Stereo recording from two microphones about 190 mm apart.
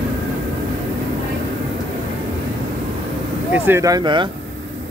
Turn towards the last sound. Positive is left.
turn(degrees=-25)  # may be behind; listen again after turning